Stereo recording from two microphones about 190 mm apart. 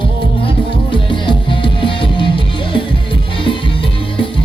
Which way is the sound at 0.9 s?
25° left (ahead or behind).